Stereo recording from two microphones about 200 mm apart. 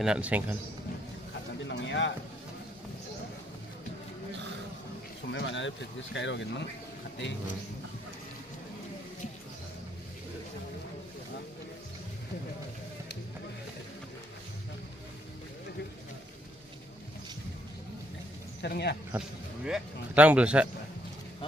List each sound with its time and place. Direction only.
0.0 s speech: 5° right (ahead or behind)
1.7 s a sound: 65° left (ahead or behind)
5.3 s speech: 65° left (ahead or behind)
18.6 s speech: 55° left (ahead or behind)
19.1 s speech: 5° right (ahead or behind)